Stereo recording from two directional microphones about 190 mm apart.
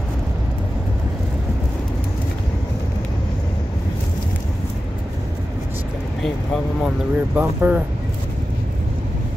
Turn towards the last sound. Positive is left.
turn(degrees=-10)  # may be behind; listen again after turning